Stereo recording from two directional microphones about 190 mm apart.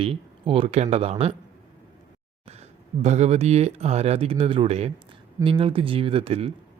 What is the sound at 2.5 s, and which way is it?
Speech, 35° right (ahead or behind).